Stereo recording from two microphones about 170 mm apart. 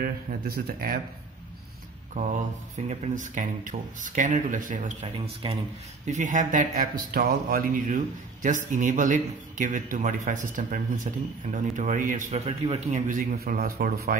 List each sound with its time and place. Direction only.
0.0 s speech: 60° right (ahead or behind)
2.1 s speech: 45° right (ahead or behind)
5.0 s speech: 35° right (ahead or behind)
6.0 s speech: 45° right (ahead or behind); by 14.1 s 60° right (ahead or behind)